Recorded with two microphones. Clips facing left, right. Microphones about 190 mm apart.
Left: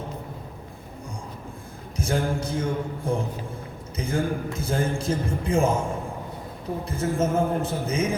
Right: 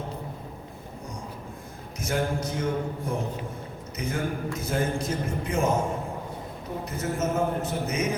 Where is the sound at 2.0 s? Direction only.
30° left (ahead or behind).